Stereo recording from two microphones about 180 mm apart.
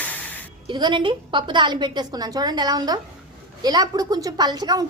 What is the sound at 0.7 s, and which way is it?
A woman's voice, 25° right (ahead or behind).